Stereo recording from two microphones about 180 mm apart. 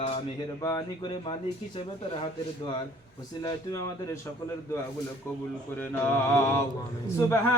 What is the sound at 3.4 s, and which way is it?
Mantra, 15° left (ahead or behind).